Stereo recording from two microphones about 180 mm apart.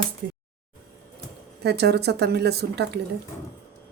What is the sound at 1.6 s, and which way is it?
Speech, 65° right (ahead or behind).